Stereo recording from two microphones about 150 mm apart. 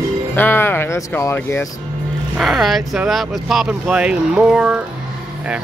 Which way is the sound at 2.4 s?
Centre (ahead or behind).